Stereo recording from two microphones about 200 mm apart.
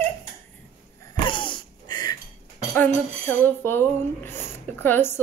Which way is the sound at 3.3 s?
10° left (ahead or behind).